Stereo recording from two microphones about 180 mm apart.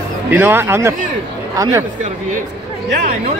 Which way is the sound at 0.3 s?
10° right (ahead or behind).